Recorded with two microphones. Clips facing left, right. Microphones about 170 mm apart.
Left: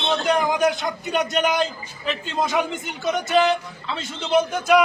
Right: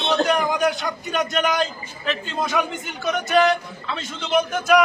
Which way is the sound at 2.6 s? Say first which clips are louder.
Right 1 dB; 20° left (ahead or behind).